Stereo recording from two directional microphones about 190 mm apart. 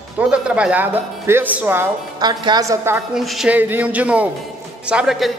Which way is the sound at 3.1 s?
Centre (ahead or behind).